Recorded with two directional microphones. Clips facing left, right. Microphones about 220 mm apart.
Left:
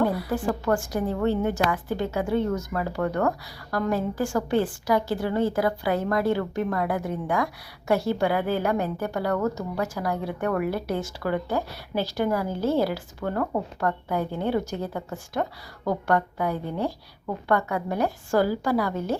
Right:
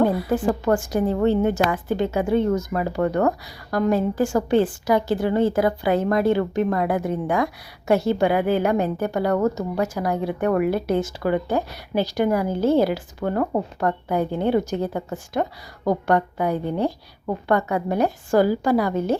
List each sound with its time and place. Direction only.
0.0 s a woman's voice: 20° right (ahead or behind)